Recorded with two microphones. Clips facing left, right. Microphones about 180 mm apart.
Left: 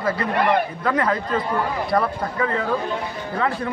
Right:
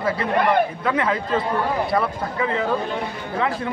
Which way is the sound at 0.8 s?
5° right (ahead or behind).